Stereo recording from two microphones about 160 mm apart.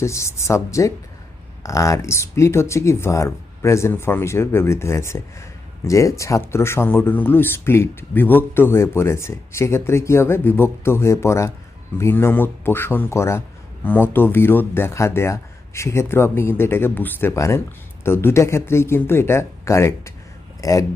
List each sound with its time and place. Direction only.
0.0 s speech: 20° left (ahead or behind)